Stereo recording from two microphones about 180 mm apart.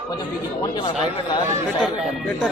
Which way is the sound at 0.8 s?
25° left (ahead or behind).